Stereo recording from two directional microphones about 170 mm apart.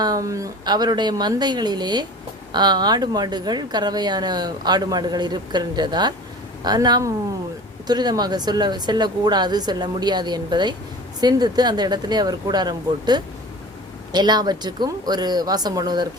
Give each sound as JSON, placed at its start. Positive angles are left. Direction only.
{"t": 0.0, "sound": "speech", "side_deg": -20}